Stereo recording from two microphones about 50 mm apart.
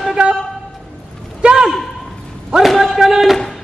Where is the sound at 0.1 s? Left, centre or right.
Centre.